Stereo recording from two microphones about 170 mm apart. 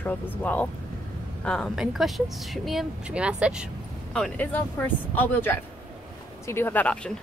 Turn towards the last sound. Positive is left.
turn(degrees=10)  # may be behind; listen again after turning